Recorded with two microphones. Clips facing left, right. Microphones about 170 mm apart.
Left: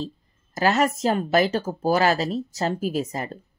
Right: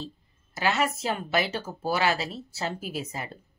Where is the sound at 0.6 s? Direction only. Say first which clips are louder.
Left 6 dB; 40° left (ahead or behind).